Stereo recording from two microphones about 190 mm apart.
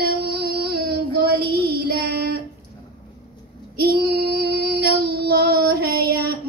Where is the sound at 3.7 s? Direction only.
55° right (ahead or behind).